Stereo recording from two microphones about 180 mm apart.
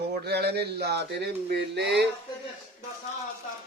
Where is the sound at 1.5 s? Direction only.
70° right (ahead or behind).